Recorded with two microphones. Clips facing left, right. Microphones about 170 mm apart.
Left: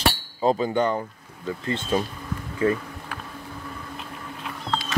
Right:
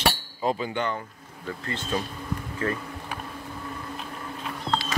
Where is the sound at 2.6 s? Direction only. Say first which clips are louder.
Left 7 dB; 15° left (ahead or behind).